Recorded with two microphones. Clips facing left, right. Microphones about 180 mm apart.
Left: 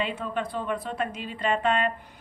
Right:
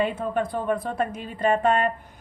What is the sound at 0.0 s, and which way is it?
A woman's voice, 50° right (ahead or behind).